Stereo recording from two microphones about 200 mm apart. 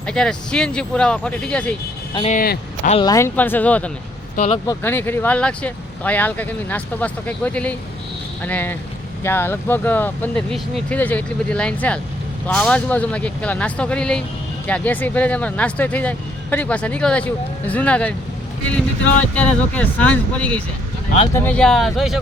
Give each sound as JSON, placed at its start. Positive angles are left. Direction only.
{"t": 0.0, "sound": "speech", "side_deg": 5}
{"t": 2.1, "sound": "speech", "side_deg": 35}
{"t": 3.0, "sound": "speech", "side_deg": 15}
{"t": 4.4, "sound": "speech", "side_deg": 35}
{"t": 4.6, "sound": "speech", "side_deg": 15}
{"t": 19.3, "sound": "speech", "side_deg": 5}